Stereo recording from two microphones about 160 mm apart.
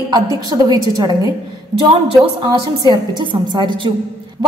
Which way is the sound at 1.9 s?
35° right (ahead or behind).